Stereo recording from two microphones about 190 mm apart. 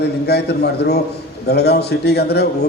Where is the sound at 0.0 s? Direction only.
60° left (ahead or behind).